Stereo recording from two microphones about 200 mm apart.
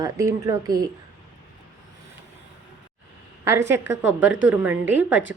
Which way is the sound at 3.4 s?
15° right (ahead or behind).